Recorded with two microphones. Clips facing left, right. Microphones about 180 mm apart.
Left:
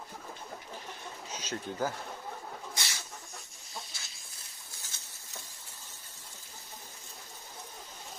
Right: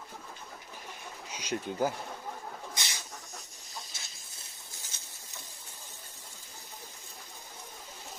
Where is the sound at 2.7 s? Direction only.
20° right (ahead or behind).